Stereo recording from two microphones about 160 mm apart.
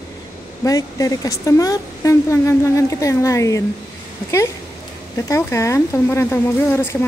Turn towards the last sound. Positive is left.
turn(degrees=15)  # may be behind; listen again after turning